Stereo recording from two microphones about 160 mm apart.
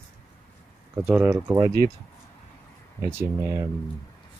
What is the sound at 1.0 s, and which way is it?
Speech, 10° right (ahead or behind).